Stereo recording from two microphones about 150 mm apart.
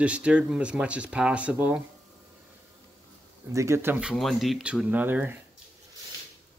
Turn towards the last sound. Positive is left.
turn(degrees=-10)  # may be behind; listen again after turning